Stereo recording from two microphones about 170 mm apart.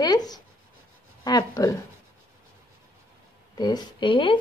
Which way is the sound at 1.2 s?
20° left (ahead or behind).